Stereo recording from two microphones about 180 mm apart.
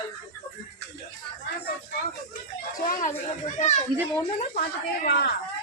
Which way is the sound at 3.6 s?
40° left (ahead or behind).